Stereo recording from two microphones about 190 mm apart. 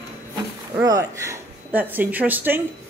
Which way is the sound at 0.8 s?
15° right (ahead or behind).